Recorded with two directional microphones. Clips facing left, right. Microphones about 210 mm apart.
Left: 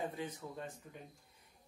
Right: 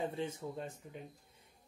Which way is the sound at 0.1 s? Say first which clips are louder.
Right 4 dB; 25° right (ahead or behind).